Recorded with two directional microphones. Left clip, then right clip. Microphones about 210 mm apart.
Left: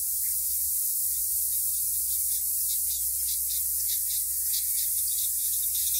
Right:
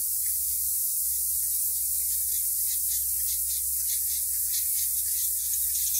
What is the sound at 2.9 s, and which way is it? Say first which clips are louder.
Music: right 1 dB; centre (ahead or behind).